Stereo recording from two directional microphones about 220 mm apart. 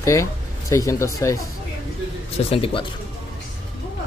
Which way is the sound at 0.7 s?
15° left (ahead or behind).